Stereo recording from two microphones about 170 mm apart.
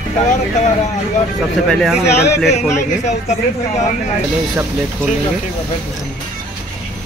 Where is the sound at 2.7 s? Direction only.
40° left (ahead or behind).